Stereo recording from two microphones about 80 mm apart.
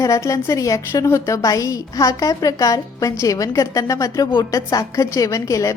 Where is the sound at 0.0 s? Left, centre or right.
Left.